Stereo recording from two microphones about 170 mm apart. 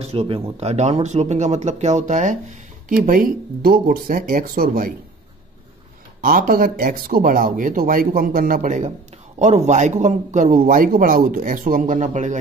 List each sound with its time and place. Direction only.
0.0 s speech: 35° right (ahead or behind); by 4.9 s 55° right (ahead or behind)
6.2 s speech: 55° right (ahead or behind)